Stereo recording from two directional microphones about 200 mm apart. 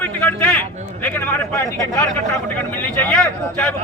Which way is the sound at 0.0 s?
10° left (ahead or behind).